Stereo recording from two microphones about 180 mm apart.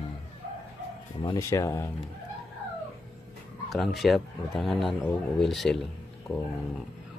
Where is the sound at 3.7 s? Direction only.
Centre (ahead or behind).